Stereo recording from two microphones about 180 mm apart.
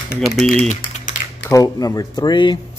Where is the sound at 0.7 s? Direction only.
45° left (ahead or behind).